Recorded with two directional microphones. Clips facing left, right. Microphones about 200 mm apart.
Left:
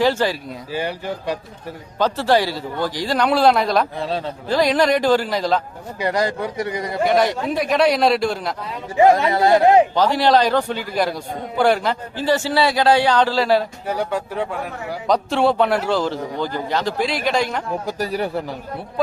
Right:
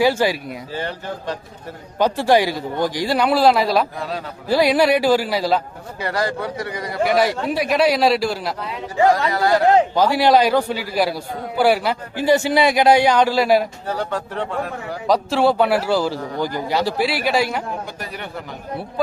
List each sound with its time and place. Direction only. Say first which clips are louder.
0.0 s a man's voice: right 1 dB; 10° right (ahead or behind)
0.7 s a man's voice: left 4 dB; 15° left (ahead or behind)
2.0 s a man's voice: right 2 dB; 15° right (ahead or behind)
6.0 s a man's voice: left 2 dB; 20° left (ahead or behind)
7.0 s a man's voice: even; 5° right (ahead or behind)
9.0 s a man's voice: left 3 dB; 20° left (ahead or behind)
9.9 s a man's voice: right 1 dB; 10° right (ahead or behind)
13.8 s a man's voice: left 1 dB; 10° left (ahead or behind)
15.0 s a man's voice: right 1 dB; centre (ahead or behind)
17.8 s speech: left 9 dB; 35° left (ahead or behind)